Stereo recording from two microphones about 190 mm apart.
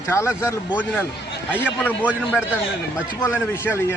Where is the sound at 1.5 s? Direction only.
10° left (ahead or behind).